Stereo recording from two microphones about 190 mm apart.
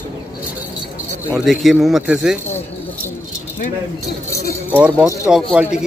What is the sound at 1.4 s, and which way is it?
Speech, centre (ahead or behind).